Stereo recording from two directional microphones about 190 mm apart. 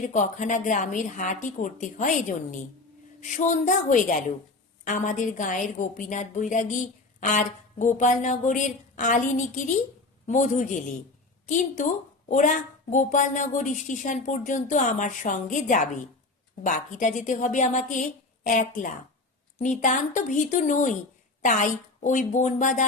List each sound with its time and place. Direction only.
0.1 s a woman's voice: 40° left (ahead or behind)